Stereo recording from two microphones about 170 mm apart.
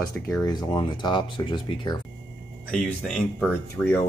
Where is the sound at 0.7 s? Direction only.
25° left (ahead or behind).